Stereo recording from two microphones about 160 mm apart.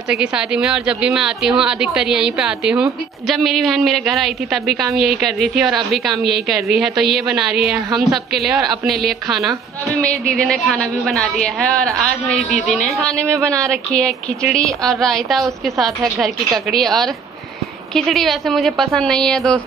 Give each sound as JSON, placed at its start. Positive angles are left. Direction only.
{"t": 0.1, "sound": "a woman's voice", "side_deg": -5}
{"t": 13.2, "sound": "speech", "side_deg": -20}
{"t": 13.7, "sound": "a woman's voice", "side_deg": 5}